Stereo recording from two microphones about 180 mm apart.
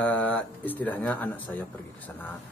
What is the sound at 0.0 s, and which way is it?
Speech, 10° left (ahead or behind).